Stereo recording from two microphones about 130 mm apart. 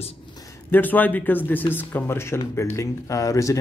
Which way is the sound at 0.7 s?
15° left (ahead or behind).